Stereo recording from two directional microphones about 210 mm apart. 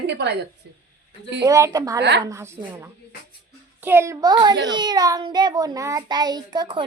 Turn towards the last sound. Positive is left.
turn(degrees=-20)  # may be behind; listen again after turning